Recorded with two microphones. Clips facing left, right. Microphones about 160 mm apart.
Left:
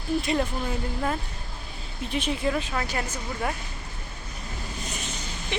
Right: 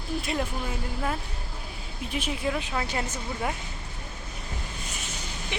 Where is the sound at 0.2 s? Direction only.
Centre (ahead or behind).